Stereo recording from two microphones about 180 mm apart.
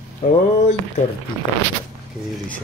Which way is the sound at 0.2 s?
35° left (ahead or behind).